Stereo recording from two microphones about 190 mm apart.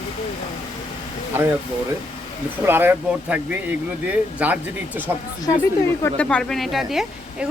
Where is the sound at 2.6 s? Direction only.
10° right (ahead or behind).